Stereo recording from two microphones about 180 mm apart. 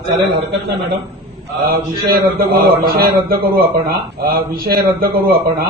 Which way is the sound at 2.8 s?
55° right (ahead or behind).